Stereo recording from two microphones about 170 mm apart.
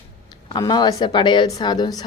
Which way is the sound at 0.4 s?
25° left (ahead or behind).